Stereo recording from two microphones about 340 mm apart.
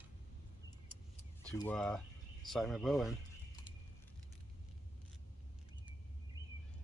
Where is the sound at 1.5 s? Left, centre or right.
Centre.